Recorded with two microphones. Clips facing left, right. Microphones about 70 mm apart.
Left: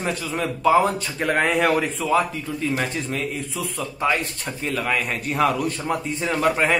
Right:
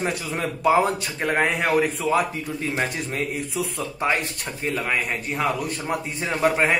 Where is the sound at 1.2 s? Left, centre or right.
Centre.